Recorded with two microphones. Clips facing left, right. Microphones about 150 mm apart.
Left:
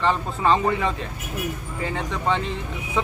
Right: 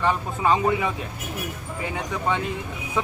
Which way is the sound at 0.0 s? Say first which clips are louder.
Left 1 dB; 10° right (ahead or behind).